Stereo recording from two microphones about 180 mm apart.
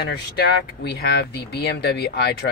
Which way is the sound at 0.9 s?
70° left (ahead or behind).